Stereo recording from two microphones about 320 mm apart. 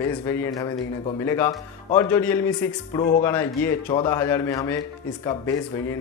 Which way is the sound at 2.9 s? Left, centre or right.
Left.